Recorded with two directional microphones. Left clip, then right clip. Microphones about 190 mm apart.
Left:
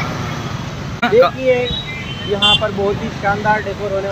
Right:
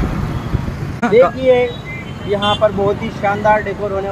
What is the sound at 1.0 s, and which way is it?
Speech, 20° right (ahead or behind).